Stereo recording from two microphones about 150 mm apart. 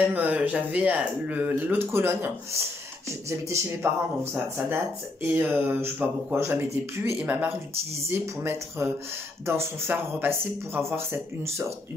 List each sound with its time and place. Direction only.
0.1 s speech: 10° right (ahead or behind)